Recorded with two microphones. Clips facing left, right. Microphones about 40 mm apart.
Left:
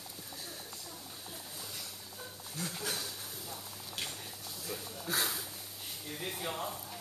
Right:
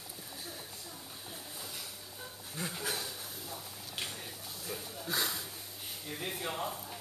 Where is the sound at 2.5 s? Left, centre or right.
Centre.